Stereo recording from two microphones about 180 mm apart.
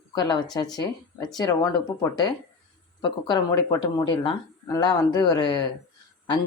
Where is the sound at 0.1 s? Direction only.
20° left (ahead or behind).